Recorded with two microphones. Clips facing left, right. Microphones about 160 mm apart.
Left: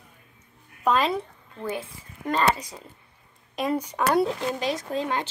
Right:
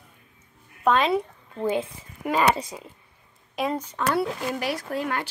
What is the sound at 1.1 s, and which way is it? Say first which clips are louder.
Speech: right 5 dB; 20° right (ahead or behind).